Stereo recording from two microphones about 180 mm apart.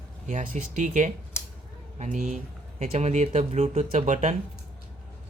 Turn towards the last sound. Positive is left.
turn(degrees=-40)  # may be behind; listen again after turning